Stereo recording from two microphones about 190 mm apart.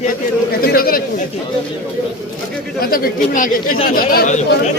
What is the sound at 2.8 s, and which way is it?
A man's voice, 50° left (ahead or behind).